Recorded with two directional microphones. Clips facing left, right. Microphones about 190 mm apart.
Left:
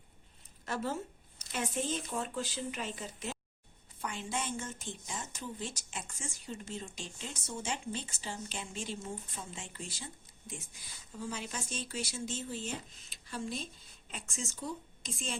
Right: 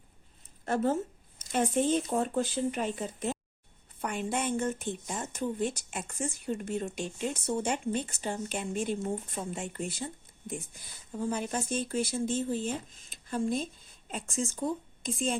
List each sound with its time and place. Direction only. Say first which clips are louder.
0.6 s speech: right 8 dB; 50° right (ahead or behind)